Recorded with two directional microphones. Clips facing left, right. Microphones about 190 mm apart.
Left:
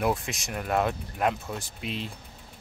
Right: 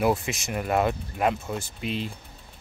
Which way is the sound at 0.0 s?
Centre (ahead or behind).